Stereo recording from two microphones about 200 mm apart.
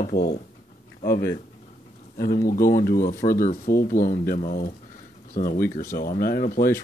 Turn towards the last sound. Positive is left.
turn(degrees=45)  # may be behind; listen again after turning